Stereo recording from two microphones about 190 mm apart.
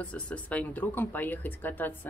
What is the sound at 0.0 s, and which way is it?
Speech, 5° left (ahead or behind).